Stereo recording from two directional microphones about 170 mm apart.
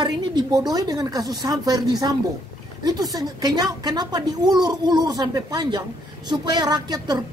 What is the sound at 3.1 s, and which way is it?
Speech, 20° right (ahead or behind).